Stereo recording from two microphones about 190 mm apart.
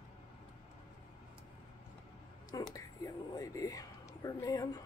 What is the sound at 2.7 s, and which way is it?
Speech, 15° left (ahead or behind).